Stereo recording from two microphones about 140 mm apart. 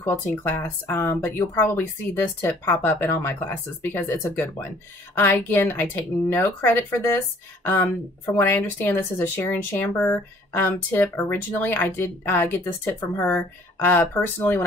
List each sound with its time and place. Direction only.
0.0 s speech: 15° left (ahead or behind)